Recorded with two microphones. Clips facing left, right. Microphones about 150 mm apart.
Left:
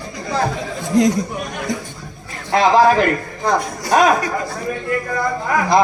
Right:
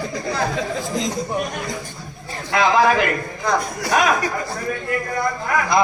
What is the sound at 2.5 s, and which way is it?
A man's voice, 35° left (ahead or behind).